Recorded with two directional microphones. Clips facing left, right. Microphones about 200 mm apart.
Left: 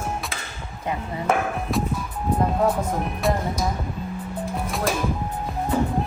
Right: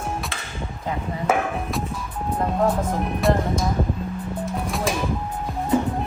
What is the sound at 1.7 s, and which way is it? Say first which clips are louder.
Music: left 7 dB; centre (ahead or behind).